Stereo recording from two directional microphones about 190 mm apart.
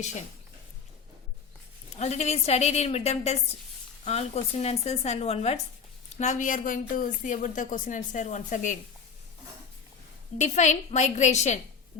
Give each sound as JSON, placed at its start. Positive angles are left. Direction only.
{"t": 2.0, "sound": "a woman's voice", "side_deg": 35}
{"t": 10.3, "sound": "a woman's voice", "side_deg": 40}